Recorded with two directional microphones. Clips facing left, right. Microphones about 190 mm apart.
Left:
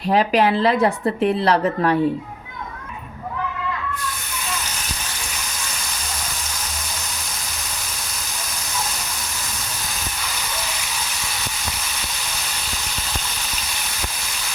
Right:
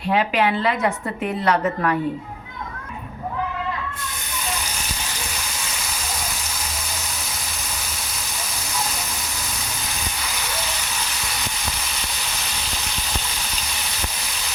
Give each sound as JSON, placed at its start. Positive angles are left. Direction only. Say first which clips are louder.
{"t": 0.1, "sound": "a woman's voice", "louder": "left 3 dB", "side_deg": 40}